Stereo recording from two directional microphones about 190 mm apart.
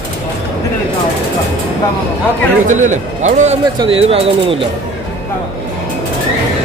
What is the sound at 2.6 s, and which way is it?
Speech, 40° right (ahead or behind).